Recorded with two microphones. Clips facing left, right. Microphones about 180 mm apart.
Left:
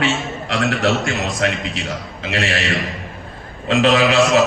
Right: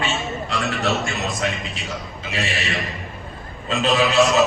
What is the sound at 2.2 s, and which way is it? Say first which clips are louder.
Speech: left 5 dB; 75° left (ahead or behind).